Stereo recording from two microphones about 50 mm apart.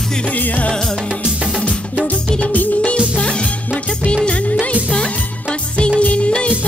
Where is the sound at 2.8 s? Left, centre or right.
Left.